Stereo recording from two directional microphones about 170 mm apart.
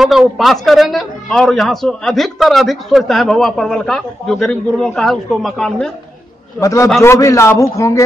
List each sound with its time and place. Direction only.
0.0 s a man's voice: centre (ahead or behind)
6.6 s a man's voice: 20° left (ahead or behind)